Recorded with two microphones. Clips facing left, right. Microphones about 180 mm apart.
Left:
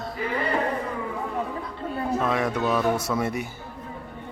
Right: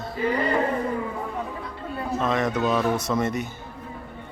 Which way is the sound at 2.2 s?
10° left (ahead or behind).